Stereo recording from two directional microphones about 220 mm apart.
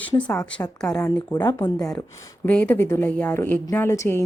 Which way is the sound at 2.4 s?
10° left (ahead or behind).